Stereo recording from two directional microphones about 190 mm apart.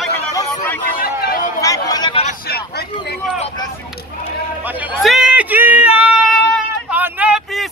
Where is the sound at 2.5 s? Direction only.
55° left (ahead or behind).